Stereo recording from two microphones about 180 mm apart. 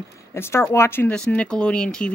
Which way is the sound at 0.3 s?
15° left (ahead or behind).